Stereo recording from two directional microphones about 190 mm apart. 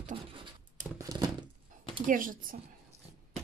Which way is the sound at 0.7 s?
20° right (ahead or behind).